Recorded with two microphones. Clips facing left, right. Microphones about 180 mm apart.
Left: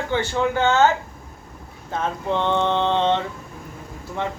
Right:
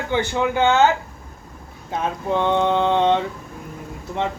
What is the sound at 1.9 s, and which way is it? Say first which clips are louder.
A man's voice: right 1 dB; 10° right (ahead or behind).